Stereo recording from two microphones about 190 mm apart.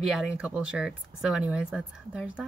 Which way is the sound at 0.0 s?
Centre (ahead or behind).